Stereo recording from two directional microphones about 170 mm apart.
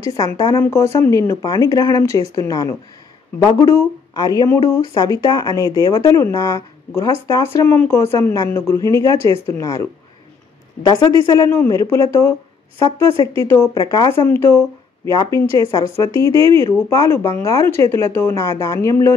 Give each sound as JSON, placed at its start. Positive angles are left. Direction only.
{"t": 0.0, "sound": "speech", "side_deg": 15}